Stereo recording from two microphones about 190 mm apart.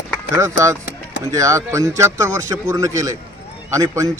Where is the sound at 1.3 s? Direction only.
15° right (ahead or behind).